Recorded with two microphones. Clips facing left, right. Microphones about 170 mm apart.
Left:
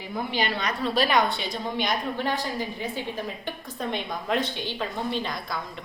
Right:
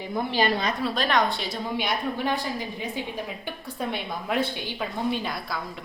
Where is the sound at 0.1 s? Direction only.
40° right (ahead or behind).